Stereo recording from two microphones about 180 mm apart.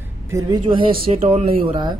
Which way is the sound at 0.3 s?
20° right (ahead or behind).